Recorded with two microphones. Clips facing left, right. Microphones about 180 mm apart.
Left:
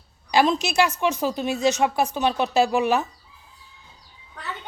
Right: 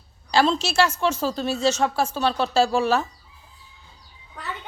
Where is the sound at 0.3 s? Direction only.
15° left (ahead or behind).